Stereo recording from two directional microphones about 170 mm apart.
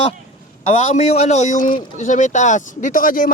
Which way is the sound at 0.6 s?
40° left (ahead or behind).